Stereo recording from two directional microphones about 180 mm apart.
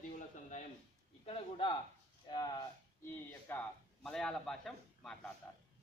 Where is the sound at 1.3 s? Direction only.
30° left (ahead or behind).